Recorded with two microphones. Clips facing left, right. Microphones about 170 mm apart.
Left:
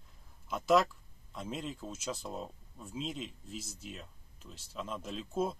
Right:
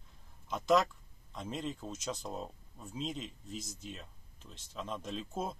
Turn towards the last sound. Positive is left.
turn(degrees=0)  # may be behind; listen again after turning